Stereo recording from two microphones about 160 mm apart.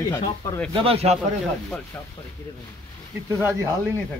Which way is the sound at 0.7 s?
35° right (ahead or behind).